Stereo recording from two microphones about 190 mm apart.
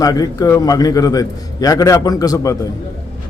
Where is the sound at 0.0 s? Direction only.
20° left (ahead or behind).